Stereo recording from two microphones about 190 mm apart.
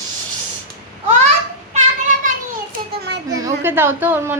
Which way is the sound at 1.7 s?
40° right (ahead or behind).